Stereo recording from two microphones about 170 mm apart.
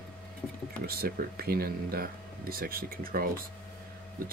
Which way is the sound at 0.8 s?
60° right (ahead or behind).